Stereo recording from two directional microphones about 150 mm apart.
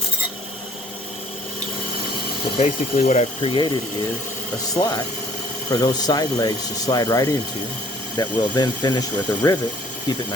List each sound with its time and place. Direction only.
2.6 s speech: 45° left (ahead or behind)
4.7 s speech: 25° left (ahead or behind)